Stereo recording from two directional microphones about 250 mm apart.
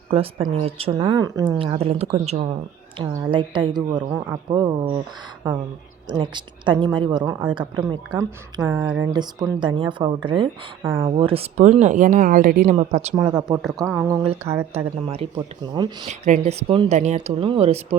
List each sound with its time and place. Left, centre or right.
0.1 s speech: right
3.0 s a woman's voice: centre
6.1 s a woman's voice: centre
9.1 s a woman's voice: centre